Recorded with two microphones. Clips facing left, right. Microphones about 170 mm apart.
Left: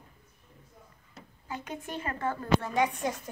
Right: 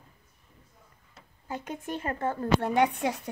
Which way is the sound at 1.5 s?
45° right (ahead or behind).